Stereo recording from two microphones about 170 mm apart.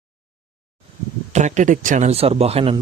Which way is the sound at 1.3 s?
45° right (ahead or behind).